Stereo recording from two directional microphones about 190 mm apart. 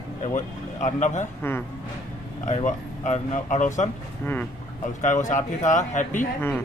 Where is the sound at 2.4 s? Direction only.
40° left (ahead or behind).